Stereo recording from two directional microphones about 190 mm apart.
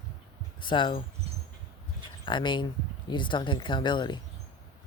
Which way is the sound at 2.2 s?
25° left (ahead or behind).